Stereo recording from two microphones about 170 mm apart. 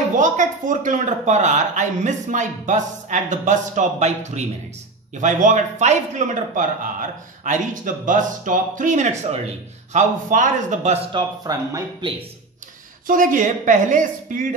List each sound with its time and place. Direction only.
0.1 s a man's voice: 50° right (ahead or behind)
11.1 s speech: 25° right (ahead or behind)
13.0 s a man's voice: 55° right (ahead or behind)